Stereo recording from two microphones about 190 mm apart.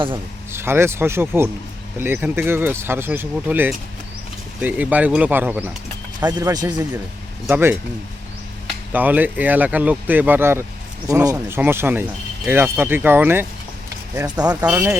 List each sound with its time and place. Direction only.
0.5 s speech: 10° right (ahead or behind)
6.1 s speech: 20° right (ahead or behind)
8.9 s speech: 10° right (ahead or behind)
14.2 s speech: 20° right (ahead or behind)